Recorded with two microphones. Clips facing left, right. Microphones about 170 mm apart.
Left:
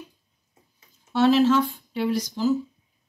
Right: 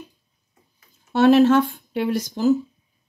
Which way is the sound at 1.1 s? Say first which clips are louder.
Right 4 dB; 55° right (ahead or behind).